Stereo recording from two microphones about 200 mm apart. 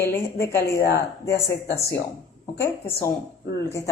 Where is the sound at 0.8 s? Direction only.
55° left (ahead or behind).